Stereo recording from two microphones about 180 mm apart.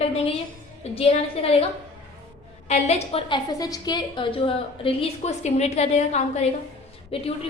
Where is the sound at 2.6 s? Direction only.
40° left (ahead or behind).